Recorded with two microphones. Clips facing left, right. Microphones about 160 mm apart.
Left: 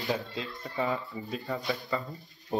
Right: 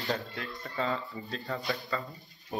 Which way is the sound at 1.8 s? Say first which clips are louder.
Left 2 dB; 20° left (ahead or behind).